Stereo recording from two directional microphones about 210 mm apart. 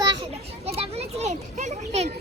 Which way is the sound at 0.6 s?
30° right (ahead or behind).